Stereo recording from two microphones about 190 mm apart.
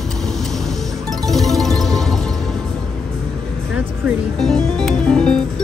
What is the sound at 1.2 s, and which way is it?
Music, centre (ahead or behind).